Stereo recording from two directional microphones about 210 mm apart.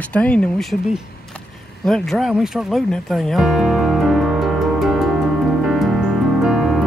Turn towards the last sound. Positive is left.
turn(degrees=0)  # may be behind; listen again after turning